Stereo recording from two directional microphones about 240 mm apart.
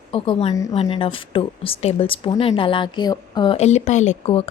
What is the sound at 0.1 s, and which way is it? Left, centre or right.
Speech, left.